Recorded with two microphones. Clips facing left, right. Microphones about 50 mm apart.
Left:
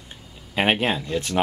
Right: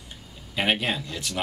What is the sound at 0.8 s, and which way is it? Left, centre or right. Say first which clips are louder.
Speech: left 5 dB; left.